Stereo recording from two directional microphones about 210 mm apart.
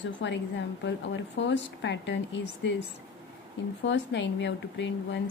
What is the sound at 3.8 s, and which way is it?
A woman's voice, 60° left (ahead or behind).